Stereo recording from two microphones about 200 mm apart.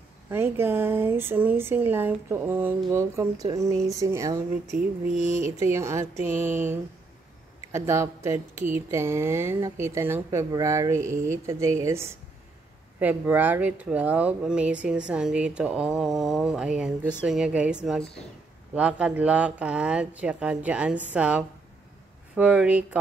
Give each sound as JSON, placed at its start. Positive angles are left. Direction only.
{"t": 0.3, "sound": "speech", "side_deg": -10}
{"t": 5.6, "sound": "speech", "side_deg": -15}
{"t": 13.0, "sound": "speech", "side_deg": -10}